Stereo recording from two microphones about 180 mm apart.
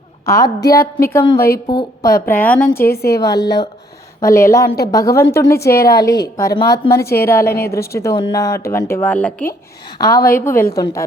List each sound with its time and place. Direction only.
0.3 s a woman's voice: 20° left (ahead or behind)
0.8 s a woman's voice: 55° left (ahead or behind)
2.0 s speech: 15° left (ahead or behind)
2.7 s a woman's voice: 60° left (ahead or behind)
3.2 s a woman's voice: 20° left (ahead or behind)
5.7 s a woman's voice: 60° left (ahead or behind)
6.0 s a woman's voice: 20° left (ahead or behind)